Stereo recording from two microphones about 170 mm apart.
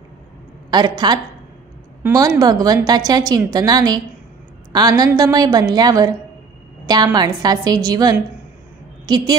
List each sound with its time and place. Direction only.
0.7 s a woman's voice: 25° right (ahead or behind)